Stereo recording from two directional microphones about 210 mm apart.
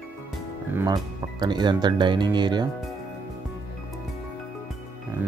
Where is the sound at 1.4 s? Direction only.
20° right (ahead or behind).